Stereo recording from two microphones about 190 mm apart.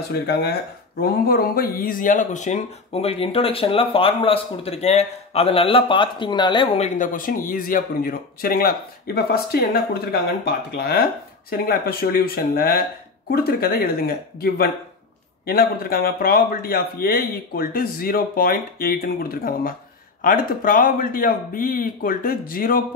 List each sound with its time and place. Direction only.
0.1 s speech: 60° left (ahead or behind); by 6.9 s 30° left (ahead or behind)
7.0 s a man's voice: 45° left (ahead or behind)
10.8 s a man's voice: 55° left (ahead or behind)